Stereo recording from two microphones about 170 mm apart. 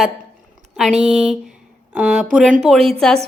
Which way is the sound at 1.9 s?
5° right (ahead or behind).